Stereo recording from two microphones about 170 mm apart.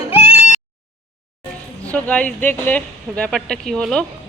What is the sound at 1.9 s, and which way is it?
Speech, 10° left (ahead or behind).